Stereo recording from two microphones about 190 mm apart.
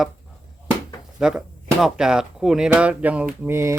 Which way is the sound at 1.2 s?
5° right (ahead or behind).